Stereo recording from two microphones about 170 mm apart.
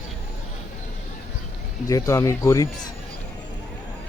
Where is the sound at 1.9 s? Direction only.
20° left (ahead or behind).